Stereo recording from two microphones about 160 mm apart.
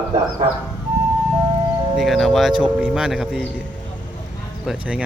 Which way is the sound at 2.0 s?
Centre (ahead or behind).